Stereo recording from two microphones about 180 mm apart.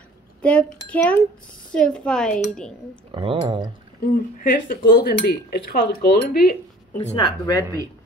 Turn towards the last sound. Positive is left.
turn(degrees=25)  # may be behind; listen again after turning